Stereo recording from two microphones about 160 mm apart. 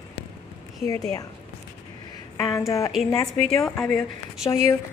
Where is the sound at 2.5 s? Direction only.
20° left (ahead or behind).